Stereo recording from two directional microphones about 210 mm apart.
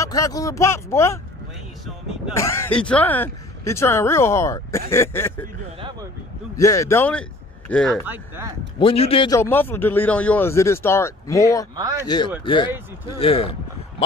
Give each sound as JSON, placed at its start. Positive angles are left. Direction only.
{"t": 0.0, "sound": "speech", "side_deg": 15}
{"t": 2.2, "sound": "speech", "side_deg": 5}
{"t": 5.8, "sound": "speech", "side_deg": -20}
{"t": 6.5, "sound": "a man's voice", "side_deg": 15}
{"t": 8.7, "sound": "a man's voice", "side_deg": 25}
{"t": 9.4, "sound": "speech", "side_deg": 10}
{"t": 11.7, "sound": "speech", "side_deg": -15}
{"t": 12.4, "sound": "a man's voice", "side_deg": 25}